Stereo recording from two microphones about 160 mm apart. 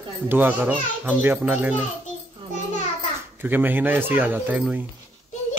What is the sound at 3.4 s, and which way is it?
A child's voice, 10° right (ahead or behind).